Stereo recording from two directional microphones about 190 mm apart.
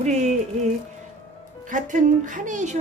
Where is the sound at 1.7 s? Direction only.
40° right (ahead or behind).